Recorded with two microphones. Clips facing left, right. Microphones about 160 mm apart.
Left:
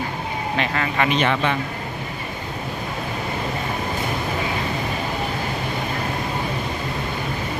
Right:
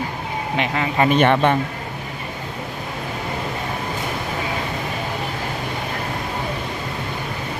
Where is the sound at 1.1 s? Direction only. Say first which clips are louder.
Right 8 dB; 55° right (ahead or behind).